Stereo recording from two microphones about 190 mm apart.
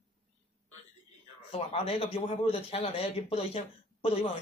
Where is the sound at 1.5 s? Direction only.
30° left (ahead or behind).